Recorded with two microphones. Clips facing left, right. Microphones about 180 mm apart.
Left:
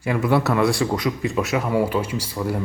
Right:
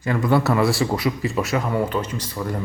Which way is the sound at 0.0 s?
10° left (ahead or behind).